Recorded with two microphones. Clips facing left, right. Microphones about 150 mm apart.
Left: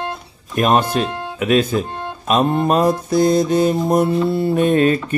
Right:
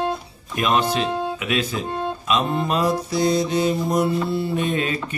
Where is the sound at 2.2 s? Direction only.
45° left (ahead or behind).